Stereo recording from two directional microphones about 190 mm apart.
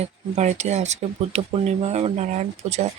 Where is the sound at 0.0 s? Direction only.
35° right (ahead or behind).